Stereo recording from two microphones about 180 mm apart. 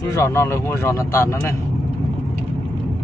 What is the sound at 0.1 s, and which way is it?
Speech, 15° left (ahead or behind).